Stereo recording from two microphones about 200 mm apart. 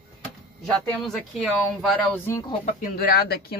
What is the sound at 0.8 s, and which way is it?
Speech, centre (ahead or behind).